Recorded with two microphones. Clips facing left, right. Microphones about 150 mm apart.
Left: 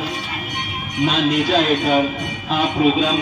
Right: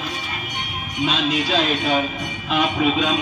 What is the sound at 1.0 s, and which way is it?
Speech, 55° left (ahead or behind).